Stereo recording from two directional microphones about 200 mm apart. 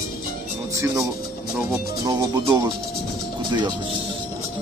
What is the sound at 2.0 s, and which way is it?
Speech, 20° right (ahead or behind).